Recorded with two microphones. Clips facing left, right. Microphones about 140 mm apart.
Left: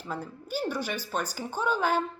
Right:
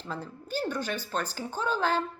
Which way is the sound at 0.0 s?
10° left (ahead or behind).